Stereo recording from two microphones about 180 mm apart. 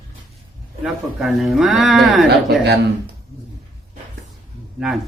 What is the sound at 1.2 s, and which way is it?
Speech, centre (ahead or behind).